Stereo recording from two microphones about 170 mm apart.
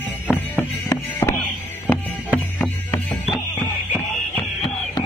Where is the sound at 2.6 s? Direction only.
15° left (ahead or behind).